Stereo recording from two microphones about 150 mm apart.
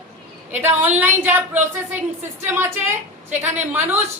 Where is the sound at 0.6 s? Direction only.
15° right (ahead or behind).